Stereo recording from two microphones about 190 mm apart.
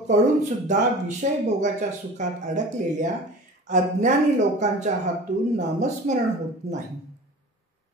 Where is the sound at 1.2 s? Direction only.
40° right (ahead or behind).